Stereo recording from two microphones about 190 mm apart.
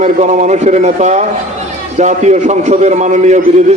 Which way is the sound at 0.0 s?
40° right (ahead or behind).